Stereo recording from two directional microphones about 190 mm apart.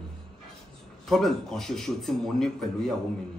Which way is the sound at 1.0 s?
Centre (ahead or behind).